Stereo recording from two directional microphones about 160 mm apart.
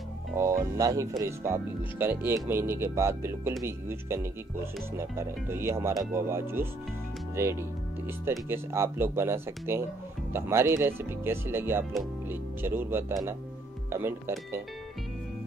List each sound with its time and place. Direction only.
0.4 s speech: 15° right (ahead or behind)